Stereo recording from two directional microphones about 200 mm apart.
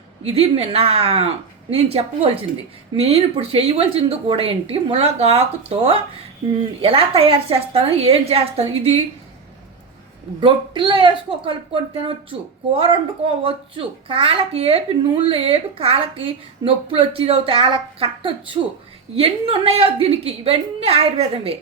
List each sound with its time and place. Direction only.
0.3 s speech: 30° right (ahead or behind)
10.4 s speech: 25° right (ahead or behind)